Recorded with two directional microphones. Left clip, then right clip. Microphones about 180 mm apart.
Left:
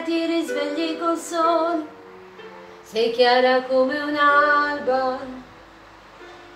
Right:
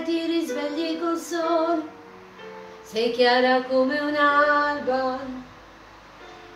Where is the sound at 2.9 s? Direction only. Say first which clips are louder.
Left 2 dB; 10° right (ahead or behind).